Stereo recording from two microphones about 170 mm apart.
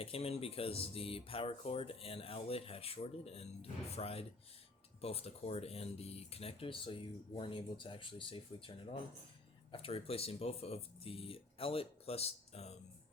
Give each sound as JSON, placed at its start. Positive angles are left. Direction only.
{"t": 0.0, "sound": "speech", "side_deg": 35}